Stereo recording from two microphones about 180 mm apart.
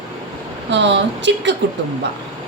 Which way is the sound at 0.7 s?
75° right (ahead or behind).